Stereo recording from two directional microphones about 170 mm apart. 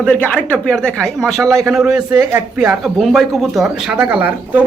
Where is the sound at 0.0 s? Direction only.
10° left (ahead or behind).